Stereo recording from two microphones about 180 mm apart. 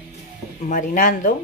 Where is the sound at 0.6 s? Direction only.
45° left (ahead or behind).